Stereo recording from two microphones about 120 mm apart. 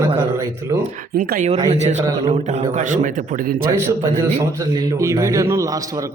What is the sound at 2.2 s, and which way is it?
A man's voice, 65° right (ahead or behind).